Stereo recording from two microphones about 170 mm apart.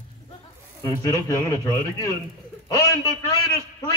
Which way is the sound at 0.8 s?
20° left (ahead or behind).